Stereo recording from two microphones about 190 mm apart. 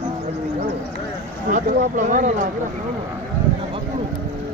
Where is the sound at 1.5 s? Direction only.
40° right (ahead or behind).